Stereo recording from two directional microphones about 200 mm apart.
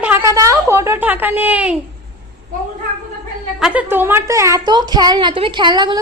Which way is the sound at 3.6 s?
5° right (ahead or behind).